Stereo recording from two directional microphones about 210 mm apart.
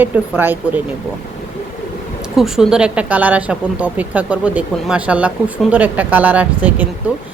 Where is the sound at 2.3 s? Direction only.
Centre (ahead or behind).